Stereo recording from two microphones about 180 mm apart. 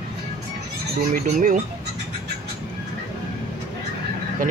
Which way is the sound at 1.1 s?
45° right (ahead or behind).